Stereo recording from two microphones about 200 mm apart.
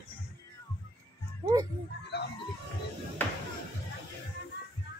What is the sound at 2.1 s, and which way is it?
Speech, 55° left (ahead or behind).